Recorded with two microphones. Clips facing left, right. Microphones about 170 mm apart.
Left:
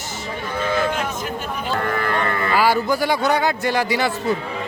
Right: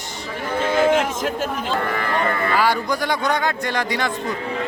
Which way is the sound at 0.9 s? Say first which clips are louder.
Right 5 dB; 90° right.